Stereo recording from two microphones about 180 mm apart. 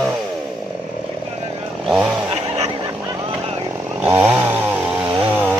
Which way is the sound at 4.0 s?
10° right (ahead or behind).